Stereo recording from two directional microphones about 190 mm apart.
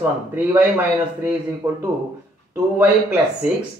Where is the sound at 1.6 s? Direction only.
20° right (ahead or behind).